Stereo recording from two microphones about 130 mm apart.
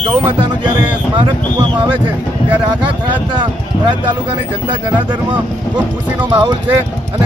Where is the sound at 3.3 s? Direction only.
35° right (ahead or behind).